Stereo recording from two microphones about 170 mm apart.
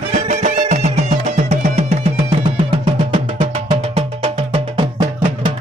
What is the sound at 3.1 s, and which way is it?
Music, 35° right (ahead or behind).